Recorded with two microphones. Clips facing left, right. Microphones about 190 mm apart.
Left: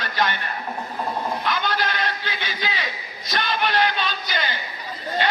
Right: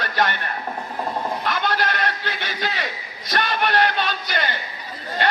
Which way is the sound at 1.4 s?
65° right (ahead or behind).